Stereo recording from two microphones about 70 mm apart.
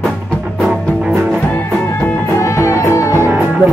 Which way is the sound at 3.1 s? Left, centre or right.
Right.